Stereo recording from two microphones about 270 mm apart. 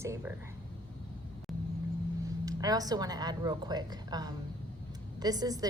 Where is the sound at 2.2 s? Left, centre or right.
Centre.